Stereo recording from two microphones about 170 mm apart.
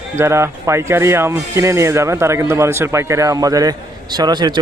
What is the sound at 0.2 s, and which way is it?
Speech, 15° right (ahead or behind).